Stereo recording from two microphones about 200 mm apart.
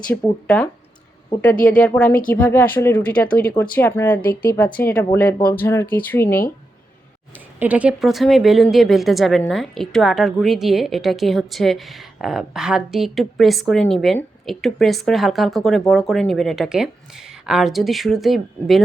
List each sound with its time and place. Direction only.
0.1 s speech: 5° left (ahead or behind)
4.2 s speech: 45° left (ahead or behind)
4.5 s speech: 10° left (ahead or behind)
7.3 s speech: 10° right (ahead or behind)